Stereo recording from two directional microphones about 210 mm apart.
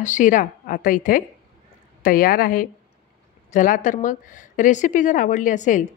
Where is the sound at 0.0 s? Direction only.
35° left (ahead or behind).